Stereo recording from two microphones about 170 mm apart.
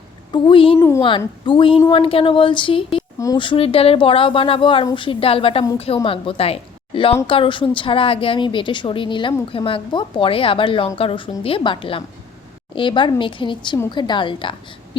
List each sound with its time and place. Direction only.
0.3 s a woman's voice: 30° left (ahead or behind)
0.8 s a woman's voice: 15° left (ahead or behind)
1.5 s a woman's voice: 30° left (ahead or behind)